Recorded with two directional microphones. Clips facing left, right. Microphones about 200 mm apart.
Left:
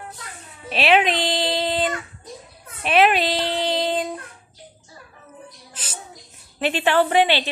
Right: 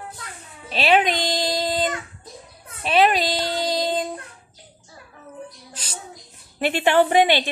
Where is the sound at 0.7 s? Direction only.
Centre (ahead or behind).